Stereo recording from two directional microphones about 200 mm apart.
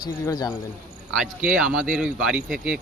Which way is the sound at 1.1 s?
5° right (ahead or behind).